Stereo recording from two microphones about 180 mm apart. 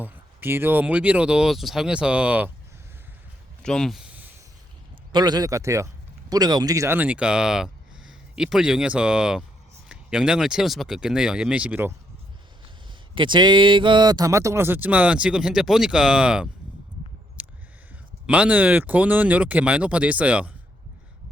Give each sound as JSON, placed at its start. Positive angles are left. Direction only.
{"t": 0.0, "sound": "speech", "side_deg": -10}
{"t": 3.6, "sound": "a sound", "side_deg": 5}
{"t": 5.1, "sound": "speech", "side_deg": -25}
{"t": 12.9, "sound": "speech", "side_deg": -25}
{"t": 17.4, "sound": "a sound", "side_deg": -10}
{"t": 18.3, "sound": "speech", "side_deg": -5}